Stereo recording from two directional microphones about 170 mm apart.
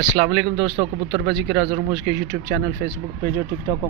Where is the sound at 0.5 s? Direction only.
25° right (ahead or behind).